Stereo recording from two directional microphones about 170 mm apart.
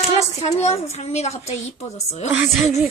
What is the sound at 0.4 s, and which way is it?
Speech, 40° left (ahead or behind).